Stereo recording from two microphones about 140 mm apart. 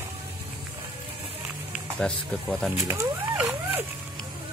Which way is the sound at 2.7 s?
20° right (ahead or behind).